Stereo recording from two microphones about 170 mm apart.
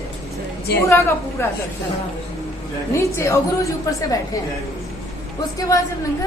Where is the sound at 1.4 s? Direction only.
15° left (ahead or behind).